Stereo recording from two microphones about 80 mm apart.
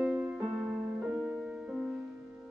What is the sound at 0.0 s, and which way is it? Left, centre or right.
Music, centre.